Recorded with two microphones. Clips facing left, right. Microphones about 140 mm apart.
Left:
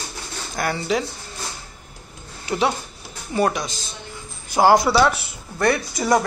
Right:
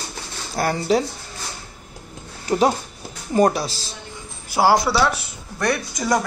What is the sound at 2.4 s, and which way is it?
Speech, 40° right (ahead or behind).